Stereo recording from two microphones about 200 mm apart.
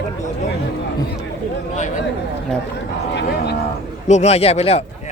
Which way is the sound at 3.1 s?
55° left (ahead or behind).